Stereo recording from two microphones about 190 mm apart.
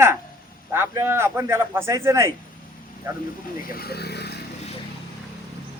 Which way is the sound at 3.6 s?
50° left (ahead or behind).